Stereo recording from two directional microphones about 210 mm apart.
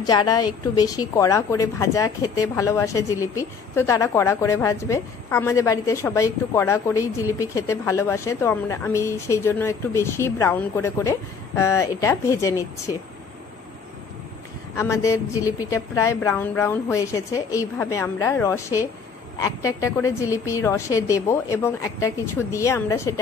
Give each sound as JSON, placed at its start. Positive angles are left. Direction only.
{"t": 0.0, "sound": "a woman's voice", "side_deg": 20}
{"t": 14.8, "sound": "a woman's voice", "side_deg": 15}